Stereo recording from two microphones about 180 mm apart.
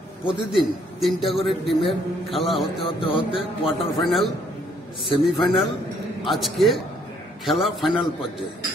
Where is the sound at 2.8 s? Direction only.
30° left (ahead or behind).